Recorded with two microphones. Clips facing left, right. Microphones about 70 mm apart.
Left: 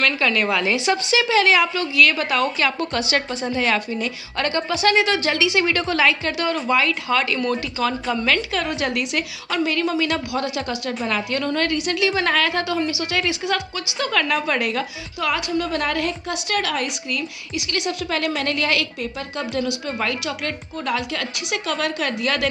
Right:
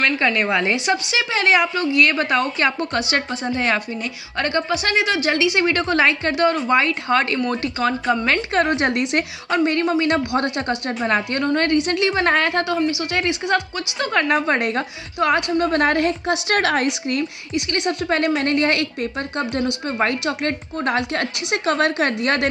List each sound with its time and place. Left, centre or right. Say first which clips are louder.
0.0 s a woman's voice: right 1 dB; right
8.6 s a woman's voice: right 4 dB; right